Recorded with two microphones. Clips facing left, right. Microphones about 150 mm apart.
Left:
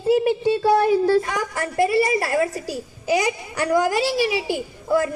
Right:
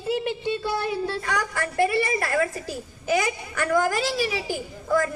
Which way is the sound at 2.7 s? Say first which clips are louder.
Left 3 dB; 15° left (ahead or behind).